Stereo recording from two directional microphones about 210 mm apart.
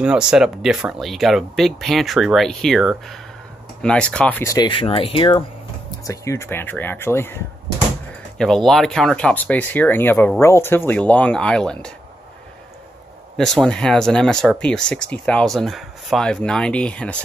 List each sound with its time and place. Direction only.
0.0 s speech: 5° right (ahead or behind)
13.4 s speech: centre (ahead or behind)